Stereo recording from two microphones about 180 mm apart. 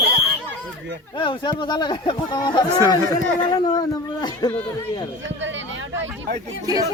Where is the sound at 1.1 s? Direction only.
25° left (ahead or behind).